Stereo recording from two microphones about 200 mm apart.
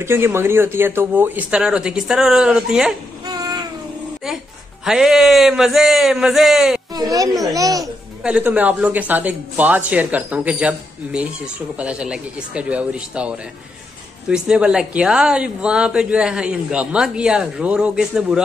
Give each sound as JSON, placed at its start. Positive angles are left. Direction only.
{"t": 0.0, "sound": "a woman's voice", "side_deg": -10}
{"t": 3.3, "sound": "a sound", "side_deg": -20}
{"t": 4.8, "sound": "a woman's voice", "side_deg": 0}
{"t": 6.9, "sound": "a woman's voice", "side_deg": -20}
{"t": 8.2, "sound": "a woman's voice", "side_deg": -5}
{"t": 14.3, "sound": "a woman's voice", "side_deg": -5}